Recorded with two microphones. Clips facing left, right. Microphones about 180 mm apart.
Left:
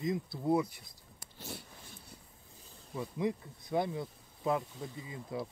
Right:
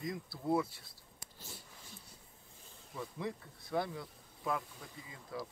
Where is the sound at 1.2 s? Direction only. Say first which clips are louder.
Left 8 dB; 65° left (ahead or behind).